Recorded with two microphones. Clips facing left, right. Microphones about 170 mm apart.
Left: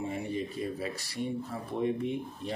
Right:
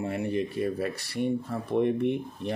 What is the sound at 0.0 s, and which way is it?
Speech, 70° right (ahead or behind).